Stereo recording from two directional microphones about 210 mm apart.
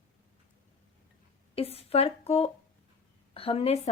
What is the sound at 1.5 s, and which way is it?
Speech, 30° left (ahead or behind).